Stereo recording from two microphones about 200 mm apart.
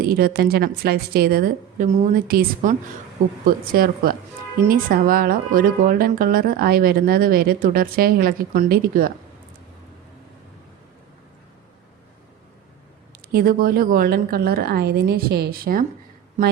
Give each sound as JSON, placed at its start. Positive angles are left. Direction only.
{"t": 0.0, "sound": "a woman's voice", "side_deg": -50}
{"t": 13.3, "sound": "a woman's voice", "side_deg": -45}